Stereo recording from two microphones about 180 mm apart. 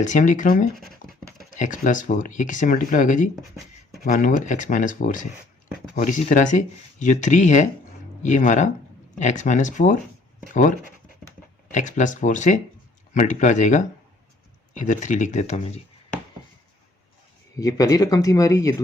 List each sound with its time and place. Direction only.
0.0 s speech: 45° left (ahead or behind)
17.6 s speech: 20° left (ahead or behind)